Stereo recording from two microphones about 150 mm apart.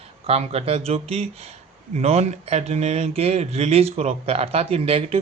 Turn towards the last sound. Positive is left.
turn(degrees=-40)  # may be behind; listen again after turning